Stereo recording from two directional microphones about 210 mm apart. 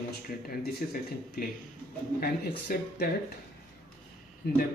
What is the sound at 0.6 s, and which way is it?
Speech, 45° left (ahead or behind).